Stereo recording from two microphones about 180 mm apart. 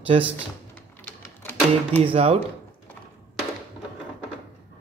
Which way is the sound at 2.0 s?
30° right (ahead or behind).